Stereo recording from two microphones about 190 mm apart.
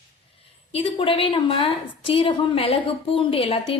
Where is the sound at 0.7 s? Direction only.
30° left (ahead or behind).